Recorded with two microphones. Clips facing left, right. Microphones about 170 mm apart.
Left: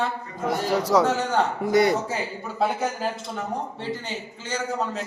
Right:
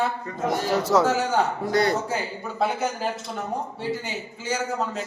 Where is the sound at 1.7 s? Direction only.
20° left (ahead or behind).